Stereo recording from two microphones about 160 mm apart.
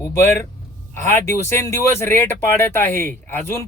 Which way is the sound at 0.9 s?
15° left (ahead or behind).